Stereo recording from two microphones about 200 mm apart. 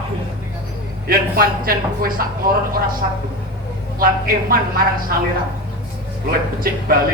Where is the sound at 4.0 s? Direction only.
50° right (ahead or behind).